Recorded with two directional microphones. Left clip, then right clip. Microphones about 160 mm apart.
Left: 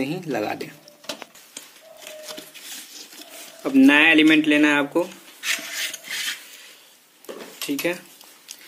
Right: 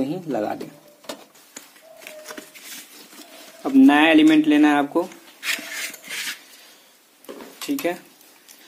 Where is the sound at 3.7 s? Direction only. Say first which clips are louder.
Even; 40° right (ahead or behind).